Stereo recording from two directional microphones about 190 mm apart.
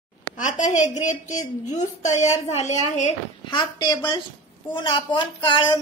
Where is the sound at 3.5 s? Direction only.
25° left (ahead or behind).